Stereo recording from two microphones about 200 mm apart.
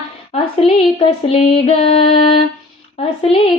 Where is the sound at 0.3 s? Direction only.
30° left (ahead or behind).